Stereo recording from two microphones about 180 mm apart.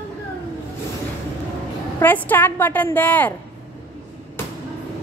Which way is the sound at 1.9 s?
10° left (ahead or behind).